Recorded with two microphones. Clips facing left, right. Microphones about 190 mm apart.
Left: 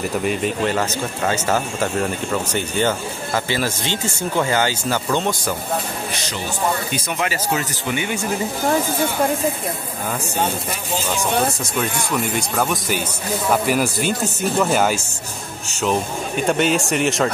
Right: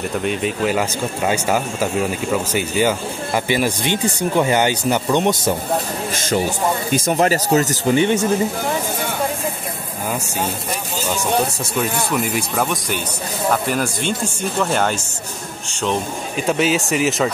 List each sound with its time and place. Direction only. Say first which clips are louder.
0.1 s speech: even; centre (ahead or behind)
0.7 s speech: right 1 dB; 10° right (ahead or behind)
6.1 s a man's voice: right 7 dB; 50° right (ahead or behind); by 8.2 s 35° right (ahead or behind)
11.8 s speech: right 2 dB; 5° right (ahead or behind)